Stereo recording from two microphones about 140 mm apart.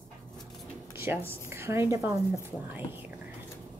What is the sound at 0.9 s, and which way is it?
A woman's voice, 15° right (ahead or behind).